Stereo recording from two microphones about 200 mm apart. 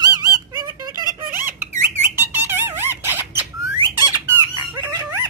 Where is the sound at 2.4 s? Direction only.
10° right (ahead or behind).